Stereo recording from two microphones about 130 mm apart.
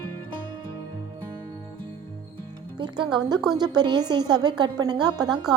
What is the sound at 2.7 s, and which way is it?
A woman's voice, 35° right (ahead or behind).